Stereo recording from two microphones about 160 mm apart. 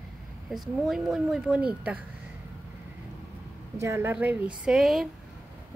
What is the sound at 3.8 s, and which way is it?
A woman's voice, 15° right (ahead or behind).